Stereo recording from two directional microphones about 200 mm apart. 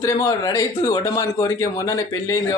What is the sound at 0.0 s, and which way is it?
Speech, 20° left (ahead or behind).